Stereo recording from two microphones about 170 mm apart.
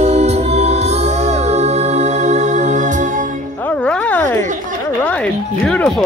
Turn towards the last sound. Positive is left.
turn(degrees=5)  # may be behind; listen again after turning